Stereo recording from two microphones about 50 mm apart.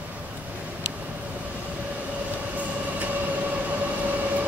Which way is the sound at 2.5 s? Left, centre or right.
Right.